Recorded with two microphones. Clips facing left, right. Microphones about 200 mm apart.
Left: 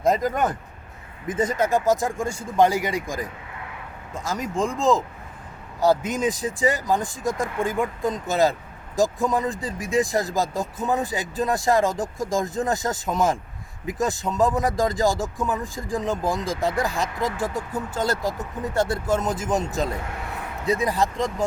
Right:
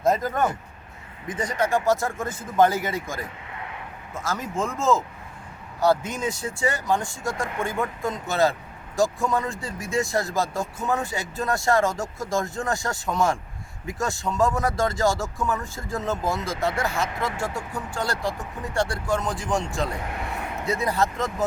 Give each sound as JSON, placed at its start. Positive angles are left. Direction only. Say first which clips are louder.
{"t": 0.0, "sound": "speech", "louder": "left 1 dB", "side_deg": 15}
{"t": 20.7, "sound": "speech", "louder": "left 3 dB", "side_deg": 15}
{"t": 21.0, "sound": "speech", "louder": "left 1 dB", "side_deg": 0}